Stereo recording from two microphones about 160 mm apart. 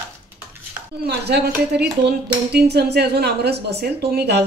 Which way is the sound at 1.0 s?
85° right.